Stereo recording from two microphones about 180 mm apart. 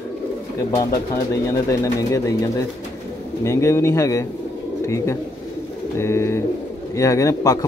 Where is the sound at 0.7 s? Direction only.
20° left (ahead or behind).